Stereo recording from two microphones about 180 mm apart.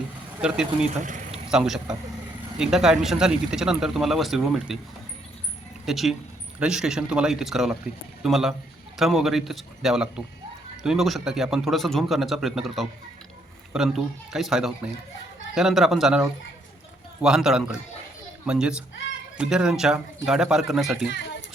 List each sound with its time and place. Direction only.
0.4 s speech: 5° right (ahead or behind)
1.0 s a sound: 45° right (ahead or behind)
1.5 s speech: 5° right (ahead or behind)
5.8 s speech: centre (ahead or behind)
17.2 s speech: 5° right (ahead or behind)
21.1 s speech: 80° left